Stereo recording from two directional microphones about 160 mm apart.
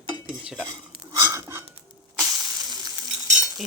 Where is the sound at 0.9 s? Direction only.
25° right (ahead or behind).